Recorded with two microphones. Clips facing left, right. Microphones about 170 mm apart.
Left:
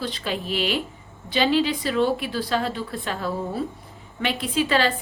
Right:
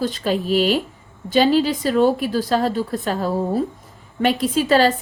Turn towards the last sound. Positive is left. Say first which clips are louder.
# right 6 dB
turn(degrees=-40)  # may be behind; listen again after turning